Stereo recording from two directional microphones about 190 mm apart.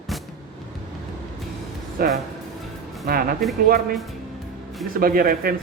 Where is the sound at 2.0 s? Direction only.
50° right (ahead or behind).